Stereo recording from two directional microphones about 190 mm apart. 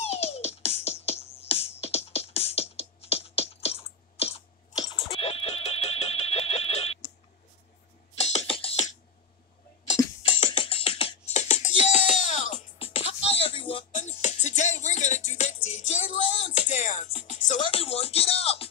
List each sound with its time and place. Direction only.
0.0 s music: 35° left (ahead or behind)
1.8 s beatboxing: 30° left (ahead or behind)
5.0 s neigh: 30° left (ahead or behind)
8.2 s music: 35° left (ahead or behind)
10.4 s music: 25° left (ahead or behind)